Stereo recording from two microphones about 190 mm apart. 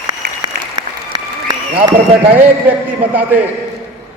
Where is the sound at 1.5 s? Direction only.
20° right (ahead or behind).